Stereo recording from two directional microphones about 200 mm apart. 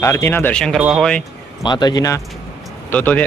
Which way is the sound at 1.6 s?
20° left (ahead or behind).